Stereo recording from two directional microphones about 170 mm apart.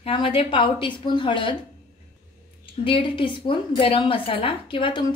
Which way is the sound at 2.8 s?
30° left (ahead or behind).